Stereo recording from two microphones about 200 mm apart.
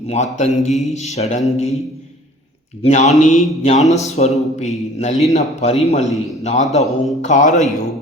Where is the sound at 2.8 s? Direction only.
35° left (ahead or behind).